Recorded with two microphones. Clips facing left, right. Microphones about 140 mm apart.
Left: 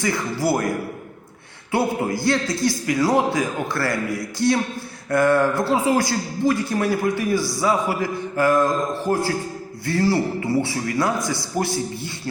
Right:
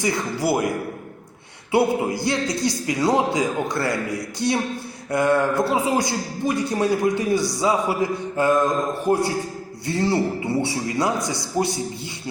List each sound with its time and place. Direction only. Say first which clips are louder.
0.0 s a man's voice: even; 15° right (ahead or behind)
1.7 s a man's voice: right 2 dB; 20° right (ahead or behind)